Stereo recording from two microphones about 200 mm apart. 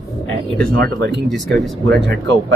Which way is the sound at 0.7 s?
50° right (ahead or behind).